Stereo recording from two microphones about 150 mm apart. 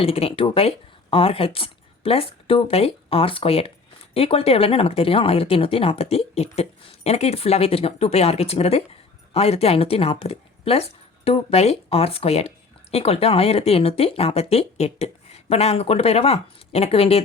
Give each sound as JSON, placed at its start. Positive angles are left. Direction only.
{"t": 0.0, "sound": "a woman's voice", "side_deg": 40}